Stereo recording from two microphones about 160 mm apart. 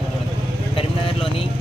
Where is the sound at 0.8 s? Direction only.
35° left (ahead or behind).